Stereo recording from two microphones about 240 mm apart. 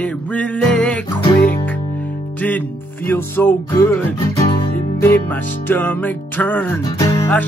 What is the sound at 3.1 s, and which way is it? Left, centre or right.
Music, centre.